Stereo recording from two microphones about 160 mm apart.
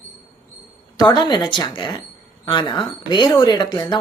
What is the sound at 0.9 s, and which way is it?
Speech, 25° left (ahead or behind).